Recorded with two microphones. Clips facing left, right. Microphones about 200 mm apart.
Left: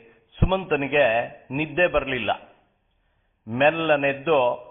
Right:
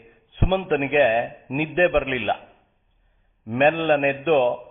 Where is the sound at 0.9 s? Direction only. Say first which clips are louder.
Right 1 dB; 15° right (ahead or behind).